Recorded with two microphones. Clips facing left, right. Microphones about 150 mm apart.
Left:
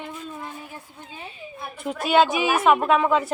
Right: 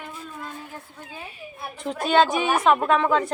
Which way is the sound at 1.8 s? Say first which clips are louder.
Even; 5° left (ahead or behind).